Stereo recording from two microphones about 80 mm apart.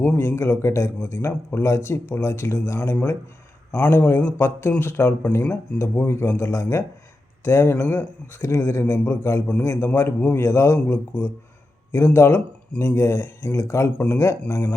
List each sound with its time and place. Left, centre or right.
0.0 s speech: left
0.3 s speech: left